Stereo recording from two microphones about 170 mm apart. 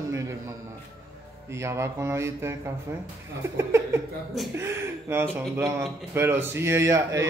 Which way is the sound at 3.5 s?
15° right (ahead or behind).